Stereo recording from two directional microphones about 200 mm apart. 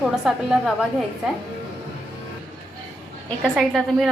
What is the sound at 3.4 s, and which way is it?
Speech, centre (ahead or behind).